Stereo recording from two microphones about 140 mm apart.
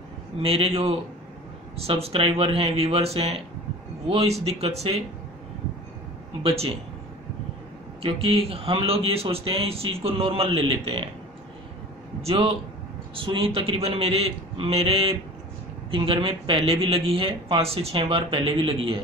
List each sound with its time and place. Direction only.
0.4 s speech: 45° right (ahead or behind)
6.4 s speech: 45° right (ahead or behind)
8.0 s speech: 45° right (ahead or behind)
12.2 s speech: 45° right (ahead or behind)